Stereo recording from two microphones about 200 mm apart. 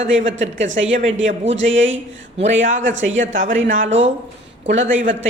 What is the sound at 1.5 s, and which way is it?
A man's voice, 70° right (ahead or behind).